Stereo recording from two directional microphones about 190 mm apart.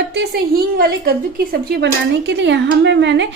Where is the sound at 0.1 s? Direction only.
55° right (ahead or behind).